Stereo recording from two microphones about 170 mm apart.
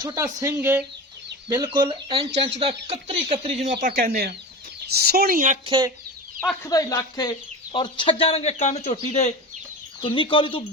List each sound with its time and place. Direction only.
0.0 s speech: 25° right (ahead or behind)
0.4 s speech: 15° right (ahead or behind)
1.7 s speech: 30° right (ahead or behind)
3.4 s speech: 45° right (ahead or behind)
5.6 s speech: 25° right (ahead or behind)
6.4 s speech: 10° left (ahead or behind)
6.7 s speech: 20° left (ahead or behind); by 9.3 s 45° left (ahead or behind)
10.0 s speech: 30° left (ahead or behind)